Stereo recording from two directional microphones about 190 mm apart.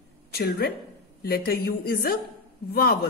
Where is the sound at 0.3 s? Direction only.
55° left (ahead or behind).